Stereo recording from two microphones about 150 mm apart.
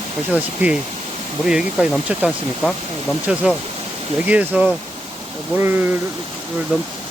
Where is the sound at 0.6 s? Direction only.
10° right (ahead or behind).